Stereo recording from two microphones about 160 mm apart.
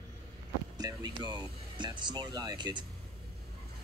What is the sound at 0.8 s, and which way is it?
Music, 25° right (ahead or behind).